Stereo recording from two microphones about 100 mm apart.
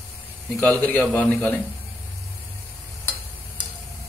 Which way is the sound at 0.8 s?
15° left (ahead or behind).